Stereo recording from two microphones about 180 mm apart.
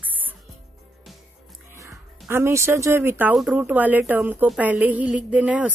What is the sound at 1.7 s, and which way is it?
Speech, 15° right (ahead or behind).